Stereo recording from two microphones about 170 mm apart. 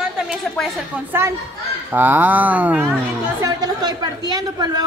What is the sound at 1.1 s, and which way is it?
A woman's voice, 15° right (ahead or behind).